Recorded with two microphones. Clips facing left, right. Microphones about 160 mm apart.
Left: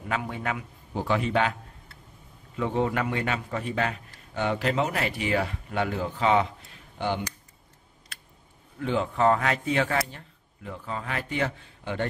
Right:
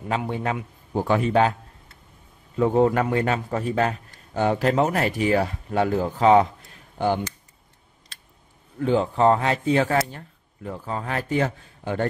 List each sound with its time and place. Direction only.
0.1 s a man's voice: 30° right (ahead or behind)
0.9 s a man's voice: 45° right (ahead or behind)
2.5 s a man's voice: 40° right (ahead or behind)
8.7 s a man's voice: 35° right (ahead or behind)